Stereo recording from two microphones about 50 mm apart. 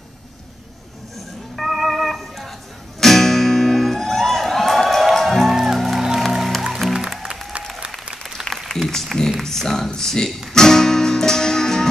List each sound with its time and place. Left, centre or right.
1.1 s music: centre
8.4 s applause: centre
8.8 s music: centre
9.8 s a sound: centre
10.5 s music: centre